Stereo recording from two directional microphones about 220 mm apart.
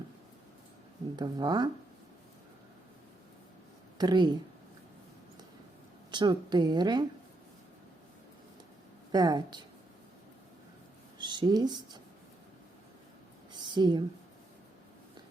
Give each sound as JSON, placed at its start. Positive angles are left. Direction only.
{"t": 1.1, "sound": "speech", "side_deg": -20}
{"t": 3.9, "sound": "speech", "side_deg": -20}
{"t": 6.1, "sound": "speech", "side_deg": -20}
{"t": 9.1, "sound": "speech", "side_deg": -20}
{"t": 11.2, "sound": "speech", "side_deg": -20}
{"t": 13.5, "sound": "a sound", "side_deg": -20}